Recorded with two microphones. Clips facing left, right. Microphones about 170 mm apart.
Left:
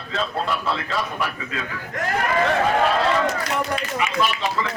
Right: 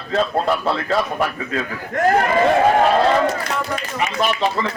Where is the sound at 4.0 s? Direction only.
40° right (ahead or behind).